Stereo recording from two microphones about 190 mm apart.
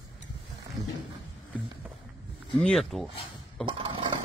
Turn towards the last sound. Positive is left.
turn(degrees=-25)  # may be behind; listen again after turning